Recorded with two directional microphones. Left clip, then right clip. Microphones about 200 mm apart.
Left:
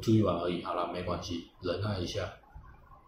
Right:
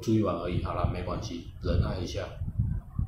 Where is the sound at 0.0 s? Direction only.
5° right (ahead or behind).